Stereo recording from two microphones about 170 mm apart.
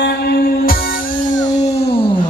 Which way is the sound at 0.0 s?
65° left (ahead or behind).